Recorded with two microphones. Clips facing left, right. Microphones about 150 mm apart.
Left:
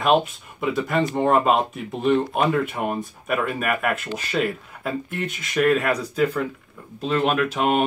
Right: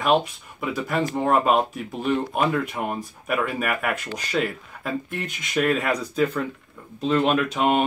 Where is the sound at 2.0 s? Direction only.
Centre (ahead or behind).